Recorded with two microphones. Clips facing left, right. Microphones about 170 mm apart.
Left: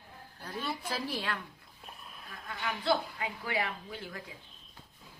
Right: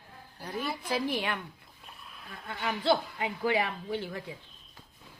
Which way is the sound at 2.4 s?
25° right (ahead or behind).